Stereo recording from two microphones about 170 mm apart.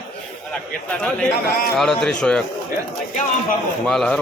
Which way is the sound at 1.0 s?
5° left (ahead or behind).